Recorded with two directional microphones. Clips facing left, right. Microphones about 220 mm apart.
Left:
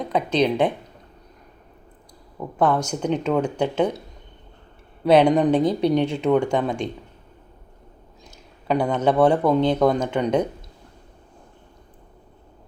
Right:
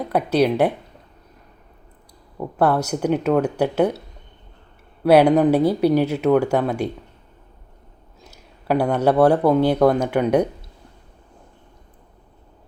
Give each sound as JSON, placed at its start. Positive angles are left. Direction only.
{"t": 0.0, "sound": "speech", "side_deg": -10}
{"t": 2.4, "sound": "speech", "side_deg": -10}
{"t": 5.0, "sound": "speech", "side_deg": -5}
{"t": 8.3, "sound": "speech", "side_deg": -5}